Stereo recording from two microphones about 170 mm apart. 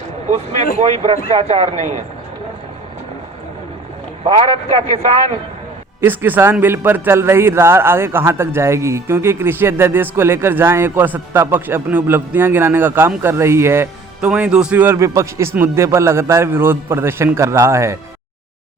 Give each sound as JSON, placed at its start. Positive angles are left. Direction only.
{"t": 0.8, "sound": "a man's voice", "side_deg": -35}
{"t": 4.2, "sound": "a man's voice", "side_deg": -30}
{"t": 6.0, "sound": "speech", "side_deg": -10}